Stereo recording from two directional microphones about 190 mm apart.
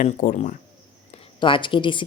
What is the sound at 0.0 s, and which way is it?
Speech, 45° left (ahead or behind).